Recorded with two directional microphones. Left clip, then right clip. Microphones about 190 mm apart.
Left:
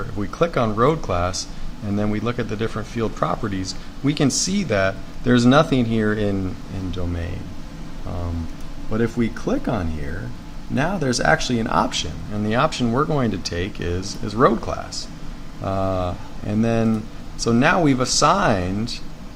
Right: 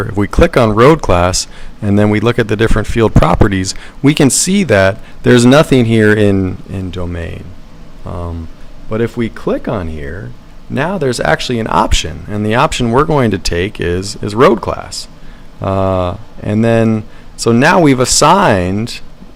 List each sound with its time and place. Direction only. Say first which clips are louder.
0.0 s a man's voice: right 10 dB; 45° right (ahead or behind)